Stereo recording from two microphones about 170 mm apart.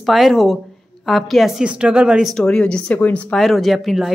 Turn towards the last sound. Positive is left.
turn(degrees=0)  # may be behind; listen again after turning